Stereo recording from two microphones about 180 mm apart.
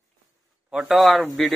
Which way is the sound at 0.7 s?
5° right (ahead or behind).